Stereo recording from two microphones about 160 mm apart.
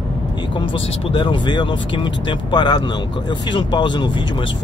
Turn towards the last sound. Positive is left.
turn(degrees=30)  # may be behind; listen again after turning